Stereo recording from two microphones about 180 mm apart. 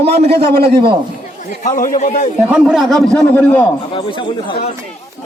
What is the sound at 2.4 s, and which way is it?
A man's voice, 5° right (ahead or behind).